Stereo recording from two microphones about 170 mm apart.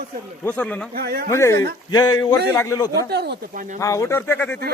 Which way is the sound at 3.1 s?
75° right (ahead or behind).